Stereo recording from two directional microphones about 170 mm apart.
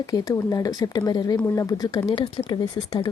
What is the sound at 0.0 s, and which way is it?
Speech, 20° left (ahead or behind).